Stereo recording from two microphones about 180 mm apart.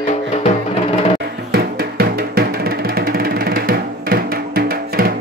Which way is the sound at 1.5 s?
60° right (ahead or behind).